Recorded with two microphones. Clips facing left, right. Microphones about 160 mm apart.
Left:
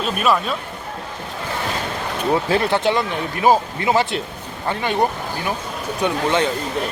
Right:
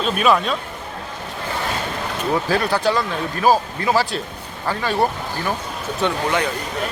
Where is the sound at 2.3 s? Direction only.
25° left (ahead or behind).